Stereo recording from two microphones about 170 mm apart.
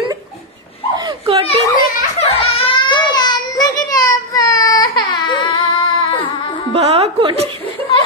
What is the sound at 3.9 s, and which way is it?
Baby cry, 20° left (ahead or behind).